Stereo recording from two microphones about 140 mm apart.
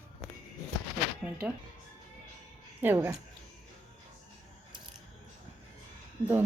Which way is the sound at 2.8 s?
15° right (ahead or behind).